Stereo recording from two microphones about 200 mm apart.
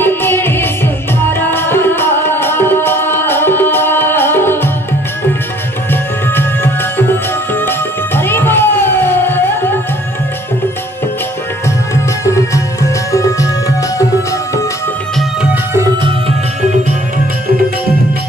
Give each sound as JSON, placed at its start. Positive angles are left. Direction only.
{"t": 0.0, "sound": "music", "side_deg": 10}
{"t": 6.3, "sound": "music", "side_deg": 10}
{"t": 11.9, "sound": "music", "side_deg": 15}
{"t": 15.7, "sound": "music", "side_deg": -15}